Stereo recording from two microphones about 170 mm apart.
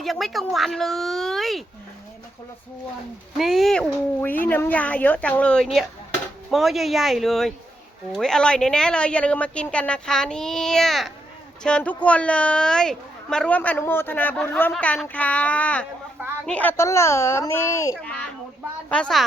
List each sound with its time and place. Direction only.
0.0 s a woman's voice: centre (ahead or behind)
3.3 s a woman's voice: centre (ahead or behind); by 17.9 s 15° left (ahead or behind)
18.0 s a woman's voice: 5° left (ahead or behind)